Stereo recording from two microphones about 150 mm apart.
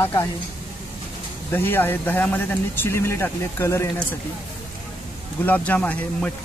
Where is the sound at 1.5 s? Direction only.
15° left (ahead or behind).